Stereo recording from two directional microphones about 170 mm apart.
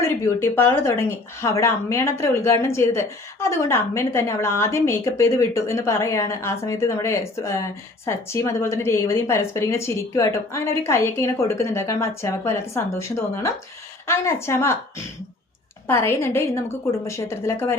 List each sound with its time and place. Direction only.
0.0 s a woman's voice: 15° left (ahead or behind)